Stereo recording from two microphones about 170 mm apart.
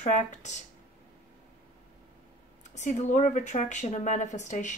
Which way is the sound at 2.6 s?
45° left (ahead or behind).